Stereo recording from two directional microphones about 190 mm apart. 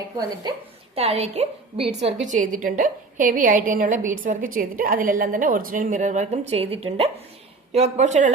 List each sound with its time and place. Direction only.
0.4 s a woman's voice: 25° right (ahead or behind)
2.3 s a woman's voice: 45° right (ahead or behind)